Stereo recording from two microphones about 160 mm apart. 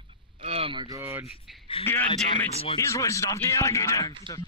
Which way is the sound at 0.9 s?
15° right (ahead or behind).